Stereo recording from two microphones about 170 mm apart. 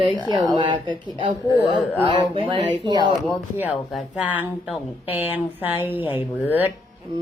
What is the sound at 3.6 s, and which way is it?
Speech, 10° right (ahead or behind).